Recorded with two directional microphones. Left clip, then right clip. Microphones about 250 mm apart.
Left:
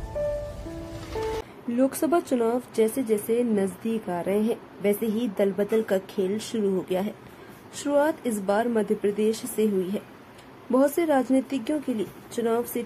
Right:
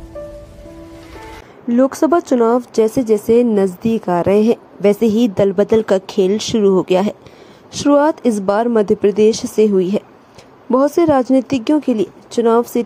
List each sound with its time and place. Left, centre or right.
1.7 s speech: centre